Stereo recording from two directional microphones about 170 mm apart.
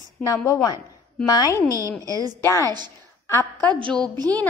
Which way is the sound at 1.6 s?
20° right (ahead or behind).